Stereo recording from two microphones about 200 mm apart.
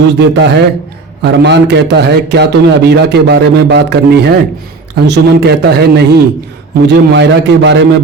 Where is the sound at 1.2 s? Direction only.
60° right (ahead or behind).